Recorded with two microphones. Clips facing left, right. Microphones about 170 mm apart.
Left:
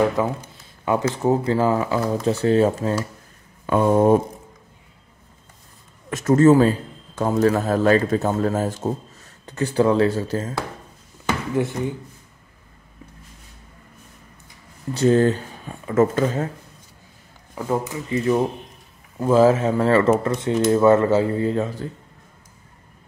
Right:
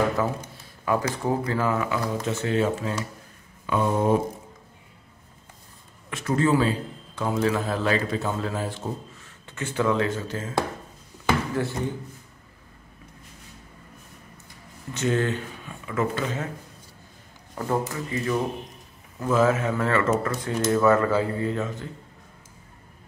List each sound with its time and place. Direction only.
0.2 s speech: 20° left (ahead or behind); by 3.0 s 40° left (ahead or behind)
3.6 s a man's voice: 50° left (ahead or behind)
6.0 s a man's voice: 45° left (ahead or behind)
11.5 s speech: 20° left (ahead or behind)
15.0 s speech: 35° left (ahead or behind)
17.6 s speech: 10° left (ahead or behind)
18.1 s speech: 25° left (ahead or behind)